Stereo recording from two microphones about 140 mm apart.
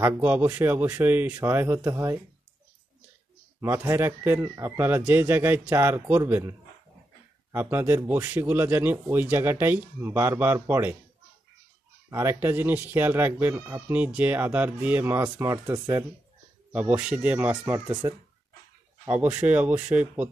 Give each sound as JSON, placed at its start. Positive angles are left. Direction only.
{"t": 0.0, "sound": "speech", "side_deg": -10}
{"t": 3.6, "sound": "speech", "side_deg": -20}
{"t": 7.5, "sound": "speech", "side_deg": -15}
{"t": 12.1, "sound": "speech", "side_deg": -20}